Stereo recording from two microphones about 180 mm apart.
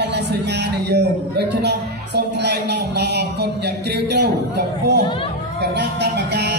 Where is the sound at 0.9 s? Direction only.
70° right (ahead or behind).